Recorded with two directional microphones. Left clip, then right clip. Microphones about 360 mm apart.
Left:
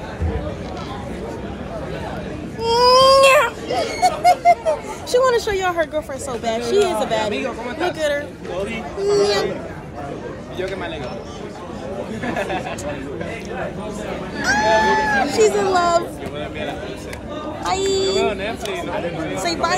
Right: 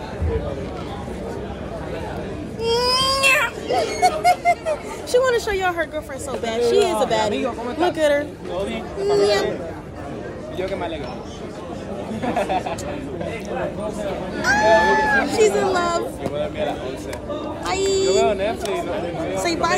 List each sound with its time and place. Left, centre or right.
2.6 s baby cry: centre
4.0 s speech: centre
9.0 s speech: centre
14.4 s speech: centre
16.3 s speech: right
18.2 s speech: right
19.4 s speech: centre